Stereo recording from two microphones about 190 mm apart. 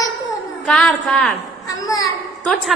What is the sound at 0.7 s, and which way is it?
Speech, 5° left (ahead or behind).